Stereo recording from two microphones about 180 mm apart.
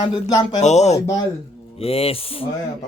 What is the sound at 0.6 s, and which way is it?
Speech, 40° left (ahead or behind).